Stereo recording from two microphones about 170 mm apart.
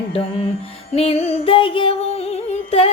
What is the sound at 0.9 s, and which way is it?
Music, 35° left (ahead or behind).